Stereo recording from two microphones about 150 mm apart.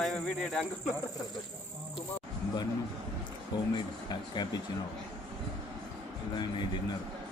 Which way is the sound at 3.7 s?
30° left (ahead or behind).